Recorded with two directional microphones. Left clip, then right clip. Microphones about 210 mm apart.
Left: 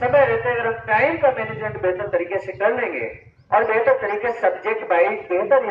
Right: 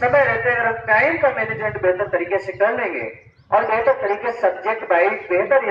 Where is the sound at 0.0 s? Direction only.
10° left (ahead or behind); by 5.1 s 30° left (ahead or behind).